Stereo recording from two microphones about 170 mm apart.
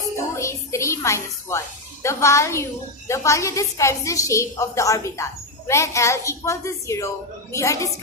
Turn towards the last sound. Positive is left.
turn(degrees=15)  # may be behind; listen again after turning